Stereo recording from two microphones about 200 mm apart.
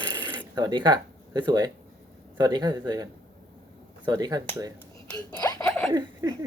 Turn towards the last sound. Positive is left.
turn(degrees=-20)  # may be behind; listen again after turning